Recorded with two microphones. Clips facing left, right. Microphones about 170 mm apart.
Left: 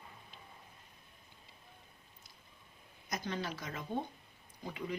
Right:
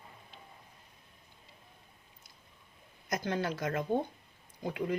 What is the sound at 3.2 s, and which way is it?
Speech, 60° right (ahead or behind).